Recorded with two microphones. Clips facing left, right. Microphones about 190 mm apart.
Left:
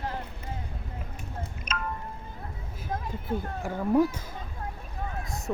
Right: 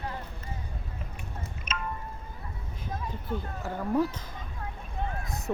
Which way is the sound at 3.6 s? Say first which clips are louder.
Left 4 dB; 10° left (ahead or behind).